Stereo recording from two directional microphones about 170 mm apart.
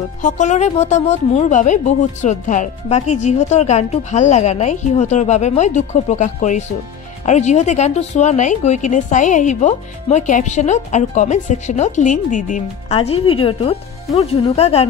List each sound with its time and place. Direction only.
0.2 s speech: 45° left (ahead or behind)
12.9 s speech: 35° left (ahead or behind)